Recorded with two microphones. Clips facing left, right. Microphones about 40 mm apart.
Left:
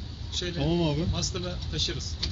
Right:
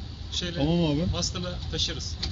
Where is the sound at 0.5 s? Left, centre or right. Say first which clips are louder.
Right 2 dB; centre.